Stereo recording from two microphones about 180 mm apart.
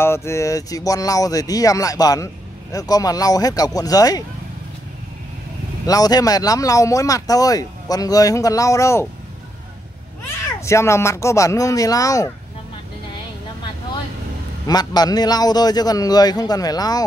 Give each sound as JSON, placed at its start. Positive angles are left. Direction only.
{"t": 0.0, "sound": "speech", "side_deg": 15}
{"t": 5.9, "sound": "speech", "side_deg": 20}
{"t": 10.2, "sound": "speech", "side_deg": 15}
{"t": 14.7, "sound": "speech", "side_deg": 20}